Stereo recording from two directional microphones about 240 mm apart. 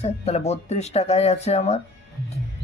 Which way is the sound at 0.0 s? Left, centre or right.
Left.